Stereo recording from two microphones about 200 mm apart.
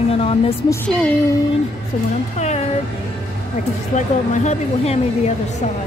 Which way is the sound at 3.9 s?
35° left (ahead or behind).